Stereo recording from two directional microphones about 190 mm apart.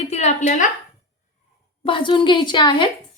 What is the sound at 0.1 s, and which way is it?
Speech, 35° left (ahead or behind).